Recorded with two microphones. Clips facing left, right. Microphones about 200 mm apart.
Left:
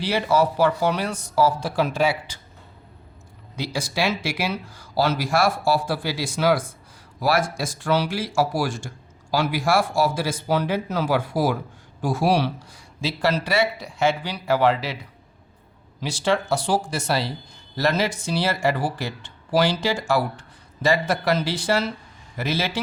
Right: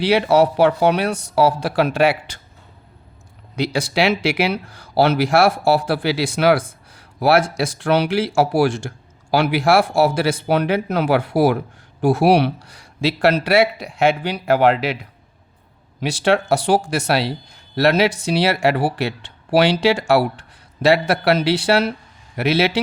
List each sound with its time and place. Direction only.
0.0 s speech: 70° right (ahead or behind)
3.5 s speech: 70° right (ahead or behind)
16.0 s speech: 65° right (ahead or behind)